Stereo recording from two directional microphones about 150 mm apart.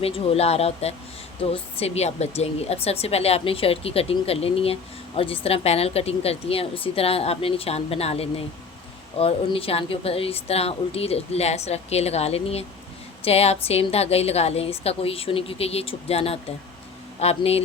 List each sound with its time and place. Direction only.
0.0 s a woman's voice: 40° left (ahead or behind)